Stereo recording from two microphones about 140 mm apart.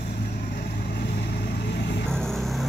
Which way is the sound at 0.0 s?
60° left (ahead or behind).